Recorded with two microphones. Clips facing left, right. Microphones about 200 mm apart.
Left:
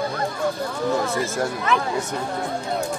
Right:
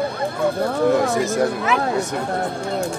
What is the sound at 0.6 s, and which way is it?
Speech, 60° right (ahead or behind).